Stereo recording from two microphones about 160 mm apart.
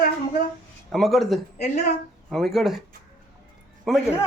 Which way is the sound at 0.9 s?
Centre (ahead or behind).